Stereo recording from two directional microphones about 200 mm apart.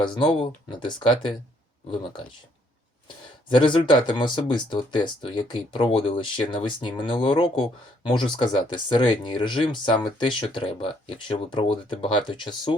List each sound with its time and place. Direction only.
0.0 s speech: 20° left (ahead or behind)
3.5 s speech: 25° left (ahead or behind)